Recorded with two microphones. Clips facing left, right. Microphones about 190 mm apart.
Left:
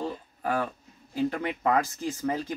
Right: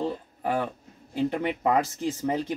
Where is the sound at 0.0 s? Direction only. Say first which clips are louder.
Right 3 dB; 20° right (ahead or behind).